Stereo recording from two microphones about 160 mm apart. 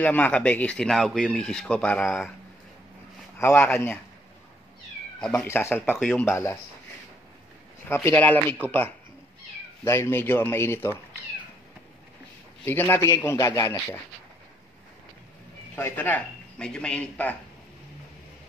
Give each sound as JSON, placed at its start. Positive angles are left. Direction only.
{"t": 0.0, "sound": "speech", "side_deg": 10}
{"t": 3.4, "sound": "speech", "side_deg": 5}
{"t": 5.2, "sound": "a man's voice", "side_deg": 10}
{"t": 5.9, "sound": "speech", "side_deg": 0}
{"t": 6.2, "sound": "a man's voice", "side_deg": 15}
{"t": 7.9, "sound": "a man's voice", "side_deg": 10}
{"t": 12.6, "sound": "a man's voice", "side_deg": 15}
{"t": 15.7, "sound": "a man's voice", "side_deg": 10}